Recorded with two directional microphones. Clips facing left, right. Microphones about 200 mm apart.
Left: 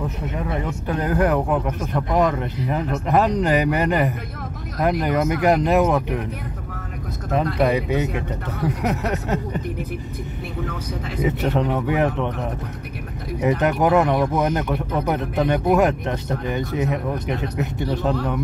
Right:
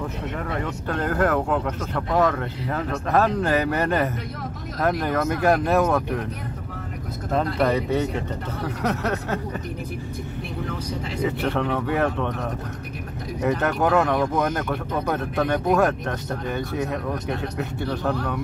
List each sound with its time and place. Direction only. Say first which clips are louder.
0.4 s speech: left 4 dB; 15° left (ahead or behind)
7.5 s speech: left 2 dB; 15° left (ahead or behind)
11.2 s speech: left 3 dB; 20° left (ahead or behind)
13.4 s speech: left 3 dB; 15° left (ahead or behind)